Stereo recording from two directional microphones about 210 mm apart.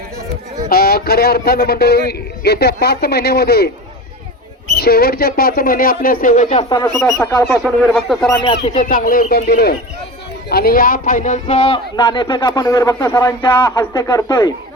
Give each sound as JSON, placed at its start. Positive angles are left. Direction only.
{"t": 0.7, "sound": "speech", "side_deg": 45}
{"t": 4.8, "sound": "speech", "side_deg": 45}
{"t": 6.7, "sound": "speech", "side_deg": 15}
{"t": 7.5, "sound": "speech", "side_deg": 0}
{"t": 8.6, "sound": "a man's voice", "side_deg": 35}
{"t": 11.4, "sound": "speech", "side_deg": 25}